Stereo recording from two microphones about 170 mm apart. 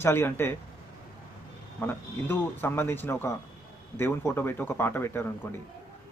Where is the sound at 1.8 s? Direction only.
10° left (ahead or behind).